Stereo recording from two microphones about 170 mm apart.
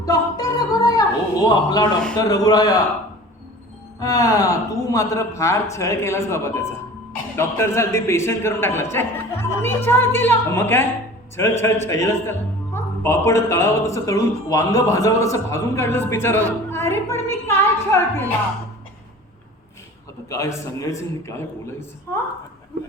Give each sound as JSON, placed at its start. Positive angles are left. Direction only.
{"t": 0.0, "sound": "a sound", "side_deg": 20}
{"t": 2.1, "sound": "a man's voice", "side_deg": 20}
{"t": 4.0, "sound": "a man's voice", "side_deg": 20}
{"t": 20.3, "sound": "a man's voice", "side_deg": 15}